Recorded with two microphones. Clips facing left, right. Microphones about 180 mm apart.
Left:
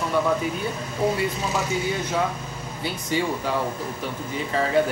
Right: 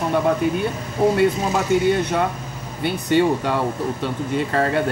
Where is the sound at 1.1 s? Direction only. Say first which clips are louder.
Right 7 dB; 65° right (ahead or behind).